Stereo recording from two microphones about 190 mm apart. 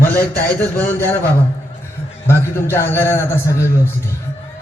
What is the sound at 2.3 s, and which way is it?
A man's voice, 15° left (ahead or behind).